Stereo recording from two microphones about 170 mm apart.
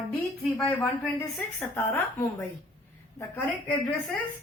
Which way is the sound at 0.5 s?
10° left (ahead or behind).